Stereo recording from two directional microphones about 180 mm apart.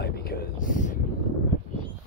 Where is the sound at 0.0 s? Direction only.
60° left (ahead or behind).